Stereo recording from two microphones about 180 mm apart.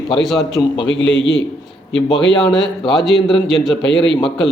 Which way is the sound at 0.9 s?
90° left.